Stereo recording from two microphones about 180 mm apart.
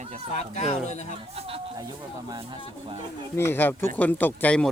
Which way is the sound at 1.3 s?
30° right (ahead or behind).